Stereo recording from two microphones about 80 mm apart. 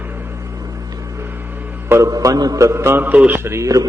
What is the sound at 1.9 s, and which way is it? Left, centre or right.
A man's voice, right.